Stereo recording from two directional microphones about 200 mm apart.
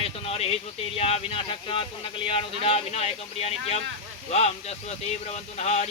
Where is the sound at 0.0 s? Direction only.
30° left (ahead or behind).